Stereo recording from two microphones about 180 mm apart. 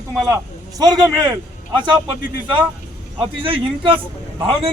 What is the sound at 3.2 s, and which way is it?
Speech, 30° right (ahead or behind).